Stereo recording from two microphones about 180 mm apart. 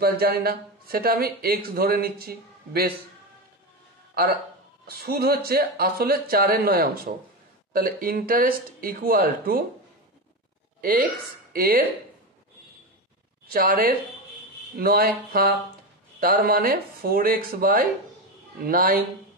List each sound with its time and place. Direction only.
0.0 s speech: 55° right (ahead or behind)
4.1 s speech: 55° right (ahead or behind)
10.8 s speech: 55° right (ahead or behind)
13.5 s speech: 55° right (ahead or behind)